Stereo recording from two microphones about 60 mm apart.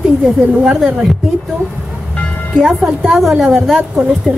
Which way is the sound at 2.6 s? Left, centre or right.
Centre.